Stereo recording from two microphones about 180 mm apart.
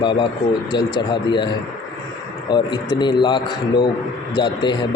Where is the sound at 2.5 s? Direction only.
25° left (ahead or behind).